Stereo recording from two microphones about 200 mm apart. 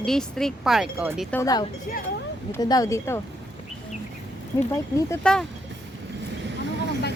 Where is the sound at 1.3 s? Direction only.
15° left (ahead or behind).